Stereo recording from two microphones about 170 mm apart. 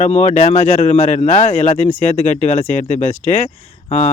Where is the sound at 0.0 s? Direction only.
40° left (ahead or behind).